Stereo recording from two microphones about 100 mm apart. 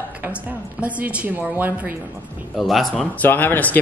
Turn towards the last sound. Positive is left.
turn(degrees=15)  # may be behind; listen again after turning